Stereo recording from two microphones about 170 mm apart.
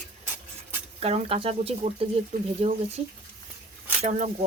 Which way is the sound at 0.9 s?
35° right (ahead or behind).